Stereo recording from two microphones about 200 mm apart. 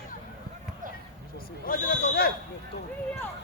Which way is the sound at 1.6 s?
50° left (ahead or behind).